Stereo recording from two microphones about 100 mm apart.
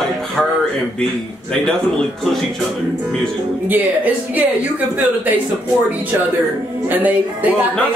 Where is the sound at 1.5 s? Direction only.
5° left (ahead or behind).